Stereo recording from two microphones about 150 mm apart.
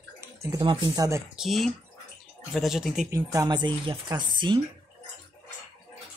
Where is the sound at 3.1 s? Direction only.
25° right (ahead or behind).